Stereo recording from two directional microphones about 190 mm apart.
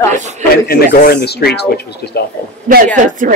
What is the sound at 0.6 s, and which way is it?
Speech, 55° left (ahead or behind).